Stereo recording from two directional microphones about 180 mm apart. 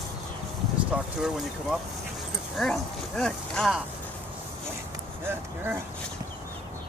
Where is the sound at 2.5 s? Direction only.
Centre (ahead or behind).